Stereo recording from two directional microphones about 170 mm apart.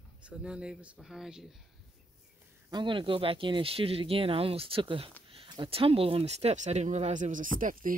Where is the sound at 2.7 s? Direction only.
25° right (ahead or behind).